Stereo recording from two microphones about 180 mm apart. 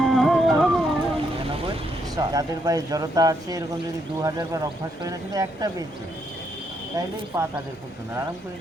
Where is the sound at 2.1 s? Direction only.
20° right (ahead or behind).